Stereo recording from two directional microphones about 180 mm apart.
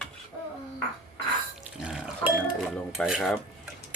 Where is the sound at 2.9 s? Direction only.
5° right (ahead or behind).